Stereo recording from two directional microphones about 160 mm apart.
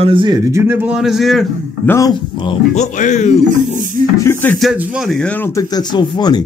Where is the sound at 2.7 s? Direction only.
50° left (ahead or behind).